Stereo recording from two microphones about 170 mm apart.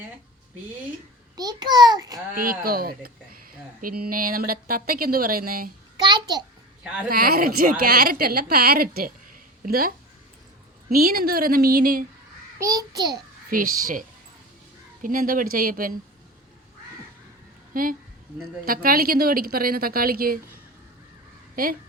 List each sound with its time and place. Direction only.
1.4 s a child's voice: 25° right (ahead or behind)
2.3 s a woman's voice: 60° right (ahead or behind)
6.0 s a sound: 25° right (ahead or behind)
7.1 s a woman's voice: 60° right (ahead or behind)
12.5 s a child's voice: 20° right (ahead or behind)
13.5 s a woman's voice: 55° right (ahead or behind)
15.0 s a woman's voice: 55° right (ahead or behind)
17.7 s a woman's voice: 55° right (ahead or behind)
21.5 s speech: 55° right (ahead or behind)